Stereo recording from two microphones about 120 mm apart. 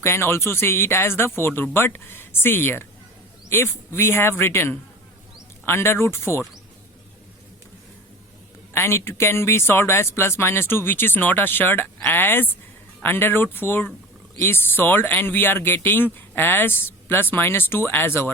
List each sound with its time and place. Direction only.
0.0 s speech: 20° left (ahead or behind)
8.7 s speech: 20° left (ahead or behind)